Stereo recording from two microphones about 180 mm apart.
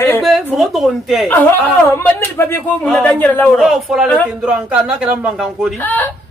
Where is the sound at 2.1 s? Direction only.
15° left (ahead or behind); by 5.8 s 5° right (ahead or behind).